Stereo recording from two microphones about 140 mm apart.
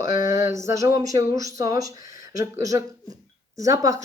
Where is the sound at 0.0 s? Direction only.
20° right (ahead or behind).